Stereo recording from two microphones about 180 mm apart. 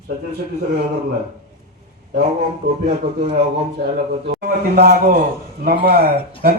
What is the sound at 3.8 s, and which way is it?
Speech, 65° right (ahead or behind).